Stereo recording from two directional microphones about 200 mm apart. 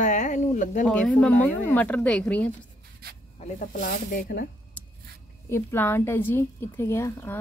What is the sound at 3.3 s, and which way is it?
Speech, 40° left (ahead or behind).